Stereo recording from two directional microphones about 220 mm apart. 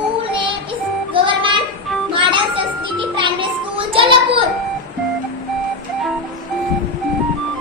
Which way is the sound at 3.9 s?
25° right (ahead or behind).